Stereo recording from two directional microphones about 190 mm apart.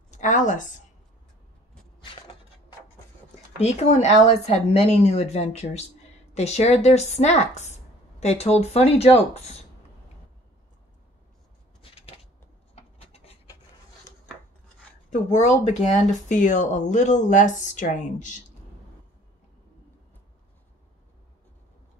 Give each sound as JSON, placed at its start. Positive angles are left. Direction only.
{"t": 0.1, "sound": "a woman's voice", "side_deg": 40}
{"t": 3.5, "sound": "speech", "side_deg": 35}
{"t": 12.7, "sound": "rub", "side_deg": 30}
{"t": 15.0, "sound": "speech", "side_deg": 40}